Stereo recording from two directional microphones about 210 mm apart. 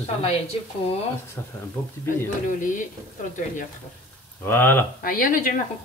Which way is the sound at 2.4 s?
40° left (ahead or behind).